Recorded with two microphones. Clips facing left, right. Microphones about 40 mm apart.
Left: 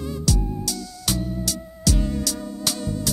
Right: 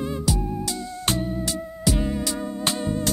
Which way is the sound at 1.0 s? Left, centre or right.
Right.